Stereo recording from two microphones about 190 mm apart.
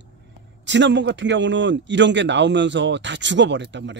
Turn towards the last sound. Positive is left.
turn(degrees=-70)  # may be behind; listen again after turning